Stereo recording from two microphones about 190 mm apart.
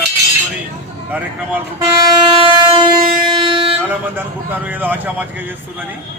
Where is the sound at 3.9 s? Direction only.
10° right (ahead or behind).